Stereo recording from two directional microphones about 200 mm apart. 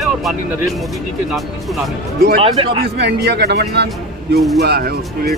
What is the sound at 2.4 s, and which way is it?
Speech, 25° right (ahead or behind).